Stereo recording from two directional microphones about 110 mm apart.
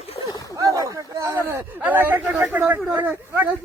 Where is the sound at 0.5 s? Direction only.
30° right (ahead or behind); by 2.8 s 15° right (ahead or behind).